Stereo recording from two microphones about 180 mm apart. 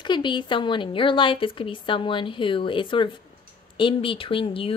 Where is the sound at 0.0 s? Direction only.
25° left (ahead or behind).